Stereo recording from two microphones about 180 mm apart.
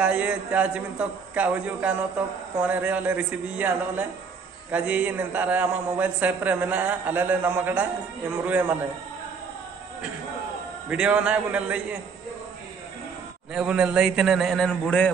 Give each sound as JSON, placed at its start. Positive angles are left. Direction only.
{"t": 0.0, "sound": "a man's voice", "side_deg": -5}
{"t": 10.9, "sound": "a man's voice", "side_deg": -5}
{"t": 13.5, "sound": "a man's voice", "side_deg": -5}